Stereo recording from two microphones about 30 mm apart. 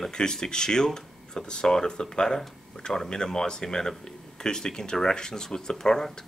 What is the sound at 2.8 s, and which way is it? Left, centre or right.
Speech, left.